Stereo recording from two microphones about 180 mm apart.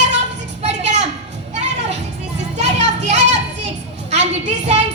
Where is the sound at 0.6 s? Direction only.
40° right (ahead or behind).